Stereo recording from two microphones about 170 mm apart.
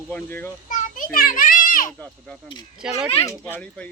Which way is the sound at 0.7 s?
50° left (ahead or behind).